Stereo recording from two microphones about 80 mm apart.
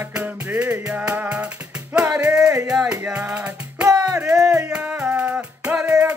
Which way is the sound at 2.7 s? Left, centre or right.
Centre.